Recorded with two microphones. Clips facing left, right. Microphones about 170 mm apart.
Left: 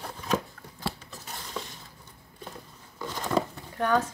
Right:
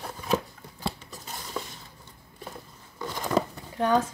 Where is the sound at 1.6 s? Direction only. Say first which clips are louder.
Right 2 dB; 5° right (ahead or behind).